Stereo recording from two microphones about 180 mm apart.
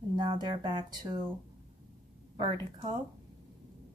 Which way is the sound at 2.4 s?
25° right (ahead or behind).